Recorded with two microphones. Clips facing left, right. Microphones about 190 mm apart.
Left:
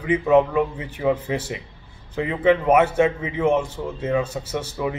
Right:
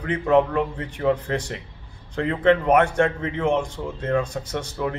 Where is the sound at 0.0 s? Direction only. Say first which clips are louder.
Left 2 dB; 5° left (ahead or behind).